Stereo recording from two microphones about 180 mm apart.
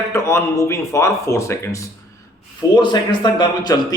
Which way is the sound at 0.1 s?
15° left (ahead or behind).